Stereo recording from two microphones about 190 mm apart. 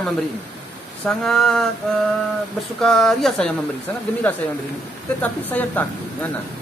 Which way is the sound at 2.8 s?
Centre (ahead or behind).